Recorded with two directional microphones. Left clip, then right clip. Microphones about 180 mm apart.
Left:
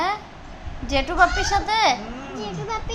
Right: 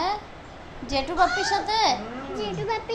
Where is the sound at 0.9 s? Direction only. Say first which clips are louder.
Left 4 dB; 25° left (ahead or behind).